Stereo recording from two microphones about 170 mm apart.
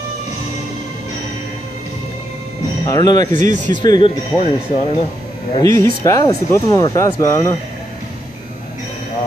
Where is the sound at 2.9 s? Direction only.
20° left (ahead or behind).